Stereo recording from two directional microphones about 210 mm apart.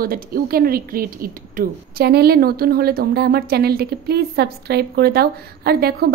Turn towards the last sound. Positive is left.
turn(degrees=-45)  # may be behind; listen again after turning